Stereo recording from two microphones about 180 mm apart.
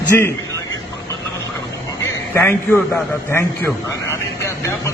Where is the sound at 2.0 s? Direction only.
15° left (ahead or behind).